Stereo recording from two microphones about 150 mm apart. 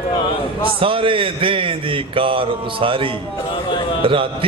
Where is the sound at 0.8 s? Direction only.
35° right (ahead or behind).